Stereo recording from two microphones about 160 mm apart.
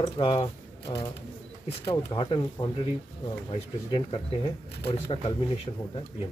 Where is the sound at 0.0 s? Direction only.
35° left (ahead or behind).